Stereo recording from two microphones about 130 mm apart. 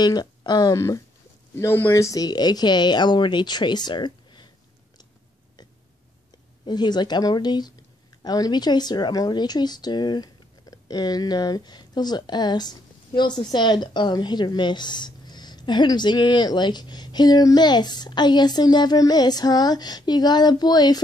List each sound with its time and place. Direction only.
0.0 s a woman's voice: 30° left (ahead or behind)
6.6 s a woman's voice: 35° left (ahead or behind)